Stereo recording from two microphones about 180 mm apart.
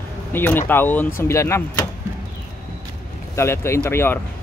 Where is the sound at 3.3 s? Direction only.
15° left (ahead or behind).